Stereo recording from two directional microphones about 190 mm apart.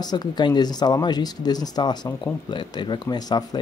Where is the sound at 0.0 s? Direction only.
20° left (ahead or behind).